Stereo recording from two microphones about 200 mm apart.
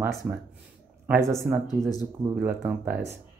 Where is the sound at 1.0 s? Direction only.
10° right (ahead or behind).